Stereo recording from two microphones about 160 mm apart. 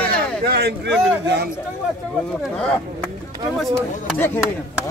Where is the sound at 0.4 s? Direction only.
85° right.